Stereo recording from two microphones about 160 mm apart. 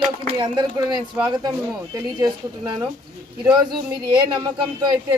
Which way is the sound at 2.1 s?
25° right (ahead or behind).